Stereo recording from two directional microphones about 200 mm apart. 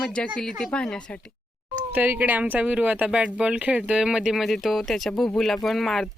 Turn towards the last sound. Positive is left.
turn(degrees=0)  # may be behind; listen again after turning